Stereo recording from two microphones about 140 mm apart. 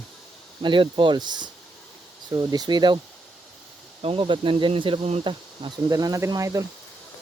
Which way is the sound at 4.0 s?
40° right (ahead or behind).